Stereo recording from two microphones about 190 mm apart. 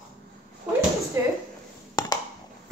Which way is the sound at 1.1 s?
15° right (ahead or behind).